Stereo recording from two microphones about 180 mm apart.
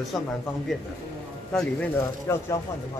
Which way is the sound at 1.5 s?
5° left (ahead or behind).